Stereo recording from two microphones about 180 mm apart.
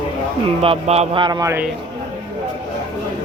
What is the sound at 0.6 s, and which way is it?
Speech, 35° right (ahead or behind).